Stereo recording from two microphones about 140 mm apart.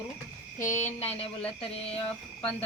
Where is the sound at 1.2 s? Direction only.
45° left (ahead or behind).